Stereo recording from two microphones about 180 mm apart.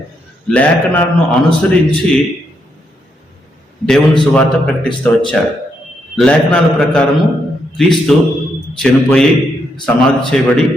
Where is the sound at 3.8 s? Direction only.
5° left (ahead or behind).